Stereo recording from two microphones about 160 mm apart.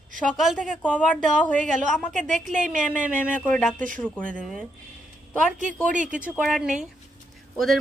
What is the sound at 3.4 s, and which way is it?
Speech, 10° left (ahead or behind).